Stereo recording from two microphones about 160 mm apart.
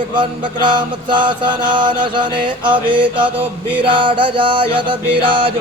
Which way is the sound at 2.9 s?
30° right (ahead or behind).